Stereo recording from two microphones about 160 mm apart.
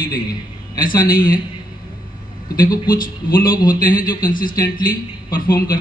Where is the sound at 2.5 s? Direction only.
65° left (ahead or behind).